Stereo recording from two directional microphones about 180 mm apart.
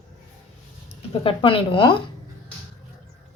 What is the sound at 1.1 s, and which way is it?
Speech, 30° left (ahead or behind).